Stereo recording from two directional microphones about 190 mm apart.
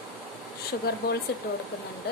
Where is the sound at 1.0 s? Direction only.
50° left (ahead or behind).